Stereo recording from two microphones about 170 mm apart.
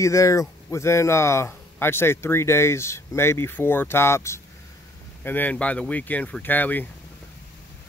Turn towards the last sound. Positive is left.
turn(degrees=10)  # may be behind; listen again after turning